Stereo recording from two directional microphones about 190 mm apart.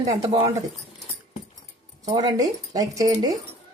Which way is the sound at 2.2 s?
20° right (ahead or behind).